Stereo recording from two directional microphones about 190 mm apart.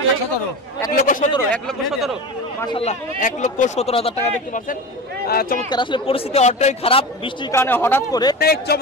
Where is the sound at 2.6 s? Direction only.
30° left (ahead or behind).